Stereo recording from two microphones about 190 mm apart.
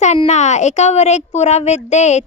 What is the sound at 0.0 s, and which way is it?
A child's voice, 35° left (ahead or behind).